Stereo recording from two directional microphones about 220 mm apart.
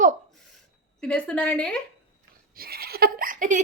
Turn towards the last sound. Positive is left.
turn(degrees=-40)  # may be behind; listen again after turning